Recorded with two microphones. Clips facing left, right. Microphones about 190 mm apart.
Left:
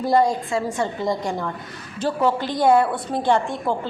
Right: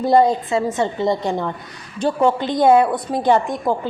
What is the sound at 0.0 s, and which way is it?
A woman's voice, 25° right (ahead or behind).